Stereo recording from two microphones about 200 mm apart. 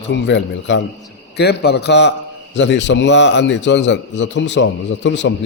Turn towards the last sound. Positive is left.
turn(degrees=65)  # may be behind; listen again after turning